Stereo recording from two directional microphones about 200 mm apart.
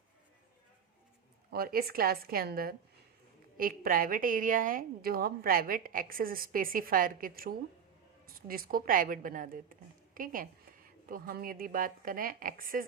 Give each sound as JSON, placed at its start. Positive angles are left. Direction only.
{"t": 1.5, "sound": "a woman's voice", "side_deg": -50}